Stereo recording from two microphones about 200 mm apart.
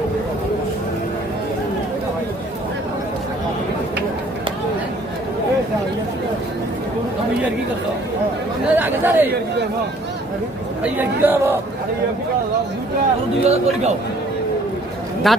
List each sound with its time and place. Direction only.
8.7 s speech: 10° right (ahead or behind)
10.8 s speech: 10° right (ahead or behind)
13.4 s speech: 30° right (ahead or behind)
15.3 s a man's voice: centre (ahead or behind)